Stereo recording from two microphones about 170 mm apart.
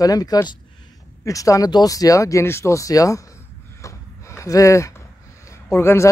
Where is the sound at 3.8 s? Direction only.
15° left (ahead or behind).